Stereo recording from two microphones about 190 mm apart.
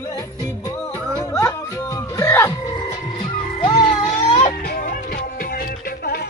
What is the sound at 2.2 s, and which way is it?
Music, 15° left (ahead or behind).